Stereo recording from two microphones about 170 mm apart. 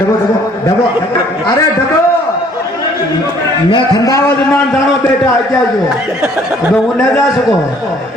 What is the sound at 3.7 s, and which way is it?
Speech, 25° left (ahead or behind).